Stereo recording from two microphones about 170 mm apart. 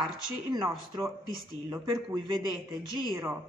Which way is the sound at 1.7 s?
25° right (ahead or behind).